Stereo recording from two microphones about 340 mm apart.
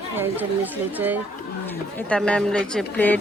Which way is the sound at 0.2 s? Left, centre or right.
Centre.